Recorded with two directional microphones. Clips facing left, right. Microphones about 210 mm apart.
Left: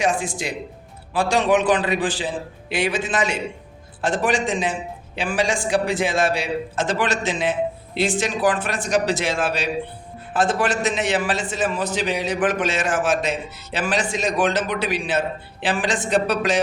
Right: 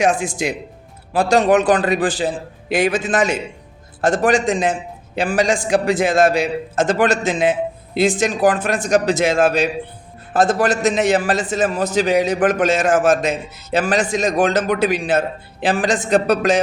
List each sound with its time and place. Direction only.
0.0 s a man's voice: 45° right (ahead or behind)